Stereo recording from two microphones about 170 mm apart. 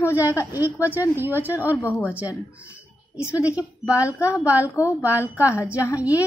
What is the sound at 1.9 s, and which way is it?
Speech, 10° left (ahead or behind).